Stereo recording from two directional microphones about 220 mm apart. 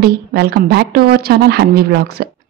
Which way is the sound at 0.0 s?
45° right (ahead or behind).